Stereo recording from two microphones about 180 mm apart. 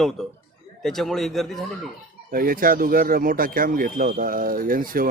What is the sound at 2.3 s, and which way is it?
Speech, 55° right (ahead or behind).